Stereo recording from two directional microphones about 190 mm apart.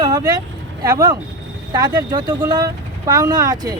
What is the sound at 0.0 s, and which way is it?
Speech, 20° right (ahead or behind).